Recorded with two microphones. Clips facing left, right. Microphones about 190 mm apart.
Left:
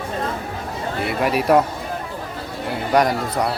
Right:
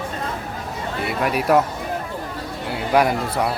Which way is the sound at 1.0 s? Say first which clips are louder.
Left 2 dB; centre (ahead or behind).